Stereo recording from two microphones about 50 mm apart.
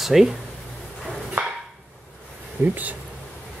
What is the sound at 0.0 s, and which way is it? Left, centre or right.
Speech, centre.